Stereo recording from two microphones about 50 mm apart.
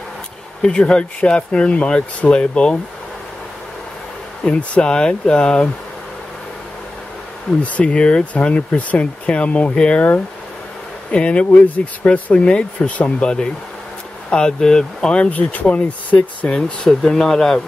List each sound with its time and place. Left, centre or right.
0.6 s speech: centre
4.5 s speech: left
7.6 s speech: left
11.1 s speech: left
15.1 s speech: left
16.2 s speech: centre